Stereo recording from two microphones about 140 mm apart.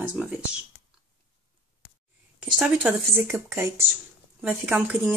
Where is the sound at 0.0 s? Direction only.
5° right (ahead or behind).